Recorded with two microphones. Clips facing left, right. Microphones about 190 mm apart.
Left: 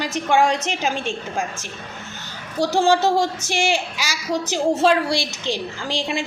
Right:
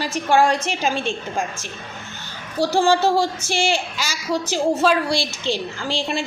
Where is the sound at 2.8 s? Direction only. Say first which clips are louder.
Left 1 dB; 20° left (ahead or behind).